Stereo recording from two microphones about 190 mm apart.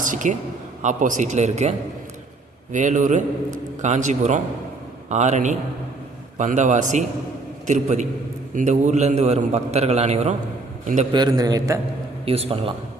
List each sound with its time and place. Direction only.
0.0 s a man's voice: 40° right (ahead or behind)
2.7 s a man's voice: 40° right (ahead or behind)
11.1 s a man's voice: 20° right (ahead or behind)
12.2 s a man's voice: 30° right (ahead or behind)